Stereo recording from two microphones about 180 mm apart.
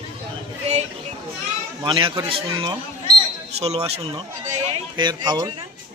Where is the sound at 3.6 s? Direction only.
35° right (ahead or behind).